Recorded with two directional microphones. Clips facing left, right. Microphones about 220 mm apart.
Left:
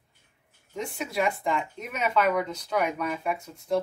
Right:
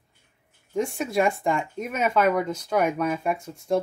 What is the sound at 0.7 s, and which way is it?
Speech, 50° right (ahead or behind).